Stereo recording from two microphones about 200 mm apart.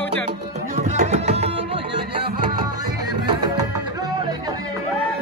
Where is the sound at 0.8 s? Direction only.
35° right (ahead or behind).